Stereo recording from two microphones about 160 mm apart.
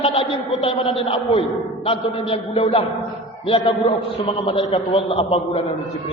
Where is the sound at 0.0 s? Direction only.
35° left (ahead or behind).